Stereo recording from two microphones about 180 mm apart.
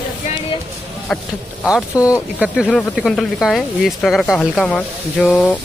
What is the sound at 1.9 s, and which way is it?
Speech, 20° left (ahead or behind).